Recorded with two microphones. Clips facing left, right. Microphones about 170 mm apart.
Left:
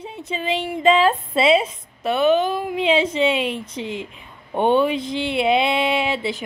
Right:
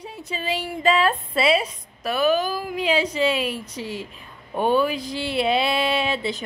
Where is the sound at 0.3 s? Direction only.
20° left (ahead or behind).